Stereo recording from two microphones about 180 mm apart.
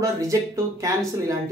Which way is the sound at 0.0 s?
15° right (ahead or behind).